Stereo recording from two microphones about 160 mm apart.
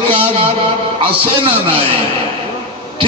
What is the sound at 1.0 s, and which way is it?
Speech, 35° right (ahead or behind).